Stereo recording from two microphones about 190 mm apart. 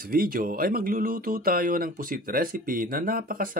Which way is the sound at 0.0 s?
50° right (ahead or behind).